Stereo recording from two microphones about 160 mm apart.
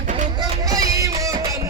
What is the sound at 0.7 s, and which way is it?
Music, 20° right (ahead or behind).